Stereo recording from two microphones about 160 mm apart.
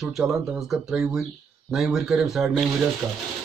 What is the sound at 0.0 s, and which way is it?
Speech, centre (ahead or behind).